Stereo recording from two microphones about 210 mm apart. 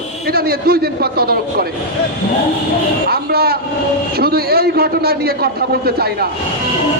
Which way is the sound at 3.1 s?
45° right (ahead or behind).